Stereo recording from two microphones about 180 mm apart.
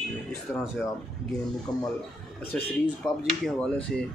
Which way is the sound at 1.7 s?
5° left (ahead or behind).